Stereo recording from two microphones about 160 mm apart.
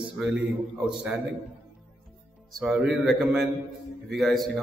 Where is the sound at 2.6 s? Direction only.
Centre (ahead or behind).